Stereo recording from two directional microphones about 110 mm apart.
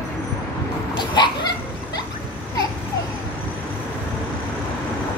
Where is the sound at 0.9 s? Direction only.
45° left (ahead or behind).